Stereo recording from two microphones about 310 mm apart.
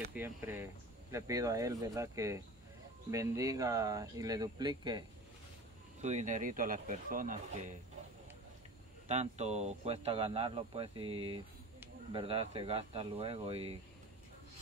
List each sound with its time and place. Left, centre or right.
0.1 s speech: centre; by 7.7 s right
9.0 s speech: right